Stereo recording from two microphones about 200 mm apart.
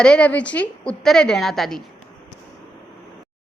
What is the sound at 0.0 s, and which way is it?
Speech, 5° left (ahead or behind).